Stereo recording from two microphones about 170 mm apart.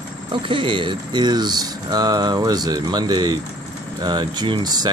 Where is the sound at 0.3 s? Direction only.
30° right (ahead or behind).